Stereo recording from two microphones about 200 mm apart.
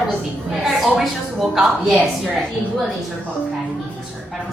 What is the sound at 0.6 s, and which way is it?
A woman's voice, centre (ahead or behind).